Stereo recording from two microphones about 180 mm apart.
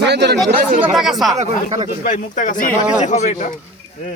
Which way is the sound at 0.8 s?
Centre (ahead or behind).